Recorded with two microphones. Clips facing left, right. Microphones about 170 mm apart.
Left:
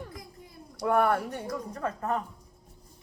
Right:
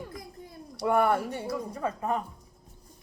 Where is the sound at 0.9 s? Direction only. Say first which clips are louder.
Even; 10° right (ahead or behind).